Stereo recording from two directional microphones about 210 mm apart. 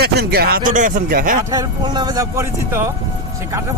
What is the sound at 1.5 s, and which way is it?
A man's voice, 20° right (ahead or behind).